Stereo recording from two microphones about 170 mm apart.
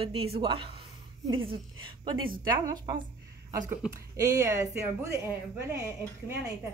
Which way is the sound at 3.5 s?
20° right (ahead or behind).